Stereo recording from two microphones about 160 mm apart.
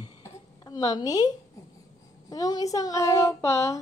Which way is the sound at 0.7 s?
25° left (ahead or behind).